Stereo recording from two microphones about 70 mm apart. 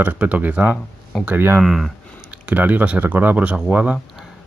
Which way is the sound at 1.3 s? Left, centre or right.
Right.